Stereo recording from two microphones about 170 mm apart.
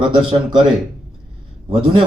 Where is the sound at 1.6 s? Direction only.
30° right (ahead or behind).